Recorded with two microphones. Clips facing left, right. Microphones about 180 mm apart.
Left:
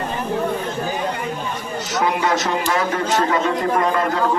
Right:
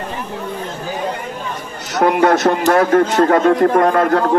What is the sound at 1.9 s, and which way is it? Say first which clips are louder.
A man's voice: right 7 dB; 55° right (ahead or behind).